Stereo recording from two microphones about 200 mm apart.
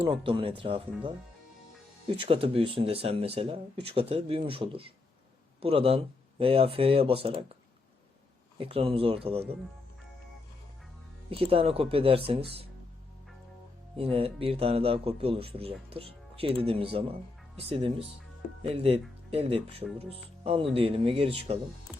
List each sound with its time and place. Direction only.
0.0 s speech: 25° right (ahead or behind)
2.0 s speech: 25° right (ahead or behind)
8.5 s speech: 30° right (ahead or behind)
11.3 s speech: 30° right (ahead or behind)
13.9 s speech: 30° right (ahead or behind)